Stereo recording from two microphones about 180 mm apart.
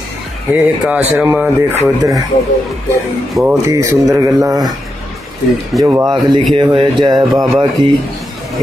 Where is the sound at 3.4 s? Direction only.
15° right (ahead or behind).